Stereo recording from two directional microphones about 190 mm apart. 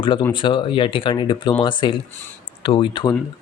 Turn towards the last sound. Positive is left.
turn(degrees=25)  # may be behind; listen again after turning